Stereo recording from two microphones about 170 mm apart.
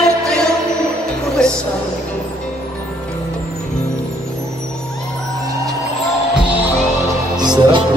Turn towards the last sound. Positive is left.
turn(degrees=-25)  # may be behind; listen again after turning